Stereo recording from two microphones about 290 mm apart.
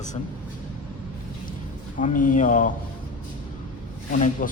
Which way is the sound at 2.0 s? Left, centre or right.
Left.